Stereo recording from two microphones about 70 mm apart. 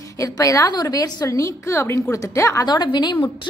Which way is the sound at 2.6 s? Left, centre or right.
Left.